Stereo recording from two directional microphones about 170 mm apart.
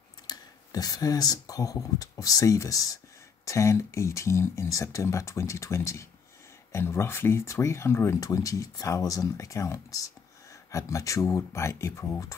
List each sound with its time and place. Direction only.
0.3 s speech: 20° left (ahead or behind)